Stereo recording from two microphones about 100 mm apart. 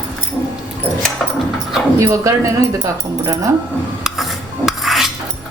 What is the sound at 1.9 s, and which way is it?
Speech, 30° right (ahead or behind).